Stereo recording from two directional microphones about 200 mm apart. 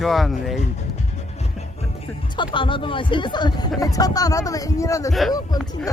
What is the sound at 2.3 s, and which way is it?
Speech, 25° left (ahead or behind).